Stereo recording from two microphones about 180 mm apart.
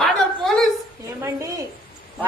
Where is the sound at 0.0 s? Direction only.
Centre (ahead or behind).